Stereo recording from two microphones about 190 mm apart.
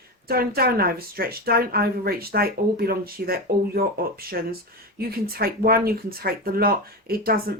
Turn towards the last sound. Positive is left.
turn(degrees=-50)  # may be behind; listen again after turning